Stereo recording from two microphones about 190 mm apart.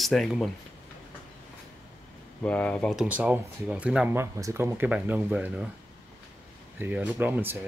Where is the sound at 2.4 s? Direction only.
5° left (ahead or behind); by 5.7 s 10° right (ahead or behind).